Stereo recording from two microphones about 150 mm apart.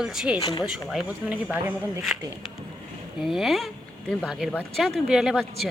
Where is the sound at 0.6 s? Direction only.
5° right (ahead or behind).